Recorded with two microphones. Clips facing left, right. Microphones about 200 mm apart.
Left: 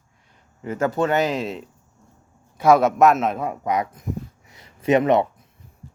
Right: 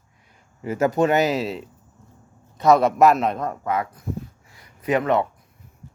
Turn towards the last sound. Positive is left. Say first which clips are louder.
# left 3 dB
turn(degrees=20)  # may be behind; listen again after turning